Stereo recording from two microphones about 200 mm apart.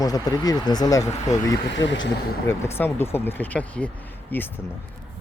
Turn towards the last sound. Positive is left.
turn(degrees=10)  # may be behind; listen again after turning